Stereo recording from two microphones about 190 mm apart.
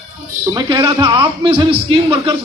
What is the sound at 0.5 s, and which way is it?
A man's voice, 20° right (ahead or behind).